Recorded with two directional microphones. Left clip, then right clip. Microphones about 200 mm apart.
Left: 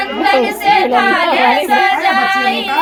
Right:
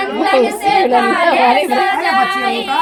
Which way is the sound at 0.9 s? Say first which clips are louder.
Even; 5° right (ahead or behind).